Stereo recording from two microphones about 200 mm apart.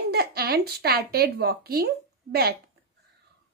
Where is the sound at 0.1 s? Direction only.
50° right (ahead or behind).